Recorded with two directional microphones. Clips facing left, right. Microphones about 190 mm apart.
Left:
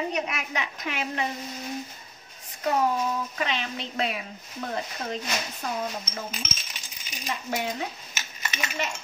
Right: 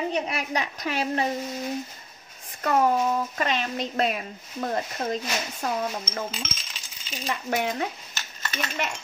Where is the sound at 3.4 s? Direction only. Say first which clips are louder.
Right 3 dB; 45° right (ahead or behind).